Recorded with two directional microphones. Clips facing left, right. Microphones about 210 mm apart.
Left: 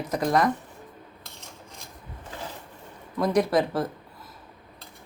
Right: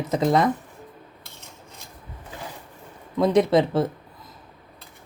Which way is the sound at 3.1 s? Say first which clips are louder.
Right 4 dB; 25° right (ahead or behind).